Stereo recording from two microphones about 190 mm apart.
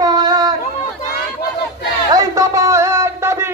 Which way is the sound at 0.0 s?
20° right (ahead or behind).